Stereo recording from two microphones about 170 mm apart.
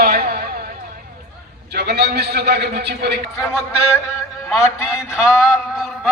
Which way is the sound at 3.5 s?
15° left (ahead or behind).